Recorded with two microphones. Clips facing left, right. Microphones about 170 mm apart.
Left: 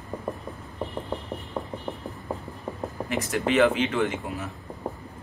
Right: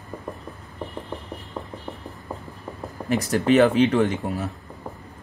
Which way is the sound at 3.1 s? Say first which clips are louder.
Right 6 dB; 40° right (ahead or behind).